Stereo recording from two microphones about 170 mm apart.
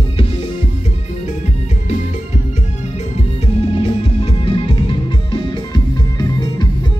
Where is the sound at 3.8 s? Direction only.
30° left (ahead or behind).